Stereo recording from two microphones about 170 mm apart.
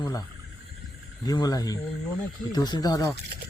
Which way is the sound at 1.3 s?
20° left (ahead or behind).